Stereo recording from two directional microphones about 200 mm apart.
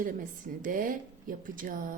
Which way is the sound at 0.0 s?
45° right (ahead or behind).